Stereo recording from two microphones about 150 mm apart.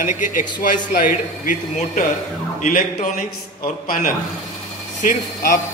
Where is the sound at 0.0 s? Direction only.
60° left (ahead or behind).